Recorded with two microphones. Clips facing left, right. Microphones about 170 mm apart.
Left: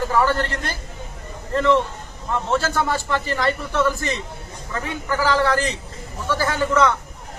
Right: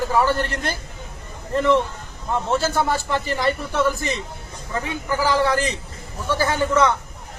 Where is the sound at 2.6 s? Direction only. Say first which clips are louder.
Right 1 dB; 10° right (ahead or behind).